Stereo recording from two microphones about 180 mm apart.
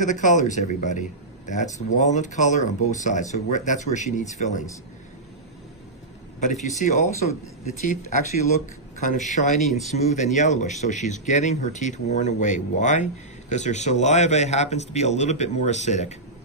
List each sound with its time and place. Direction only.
0.0 s speech: 45° left (ahead or behind)
6.4 s speech: 45° left (ahead or behind)
9.3 s speech: 40° left (ahead or behind)
9.6 s speech: centre (ahead or behind)
9.8 s speech: 40° left (ahead or behind)